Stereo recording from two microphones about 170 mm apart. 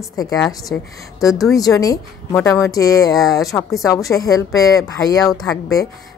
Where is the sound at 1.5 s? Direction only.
20° left (ahead or behind).